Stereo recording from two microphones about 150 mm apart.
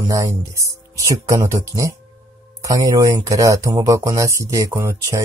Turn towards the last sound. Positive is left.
turn(degrees=-15)  # may be behind; listen again after turning